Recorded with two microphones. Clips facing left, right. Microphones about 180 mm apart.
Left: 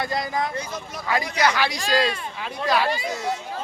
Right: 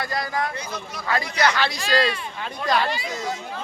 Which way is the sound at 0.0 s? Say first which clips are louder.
Left 1 dB; 20° left (ahead or behind).